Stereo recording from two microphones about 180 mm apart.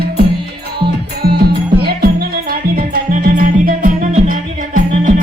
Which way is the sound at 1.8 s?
60° right (ahead or behind).